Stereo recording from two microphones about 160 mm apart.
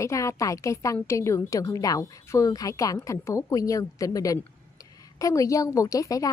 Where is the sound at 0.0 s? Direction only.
20° left (ahead or behind).